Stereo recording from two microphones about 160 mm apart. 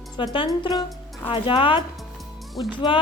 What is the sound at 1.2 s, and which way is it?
Speech, 35° left (ahead or behind).